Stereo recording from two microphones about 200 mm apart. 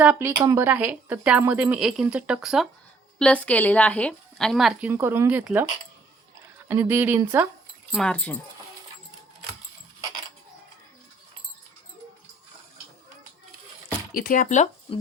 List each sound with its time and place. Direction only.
0.0 s speech: 10° right (ahead or behind)
6.7 s speech: 10° right (ahead or behind)
7.9 s speech: 5° left (ahead or behind)
14.1 s speech: 45° left (ahead or behind)